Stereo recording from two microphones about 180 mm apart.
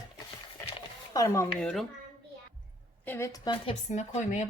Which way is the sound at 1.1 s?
15° left (ahead or behind).